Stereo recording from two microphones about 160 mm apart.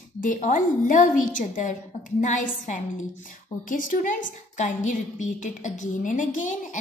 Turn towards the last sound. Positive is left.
turn(degrees=50)  # may be behind; listen again after turning